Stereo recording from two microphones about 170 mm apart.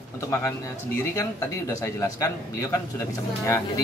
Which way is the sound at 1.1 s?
15° left (ahead or behind).